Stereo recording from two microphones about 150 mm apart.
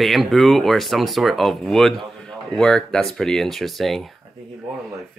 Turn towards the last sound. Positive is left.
turn(degrees=0)  # may be behind; listen again after turning